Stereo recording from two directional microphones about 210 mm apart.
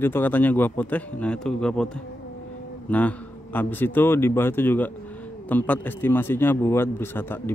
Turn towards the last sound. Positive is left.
turn(degrees=10)  # may be behind; listen again after turning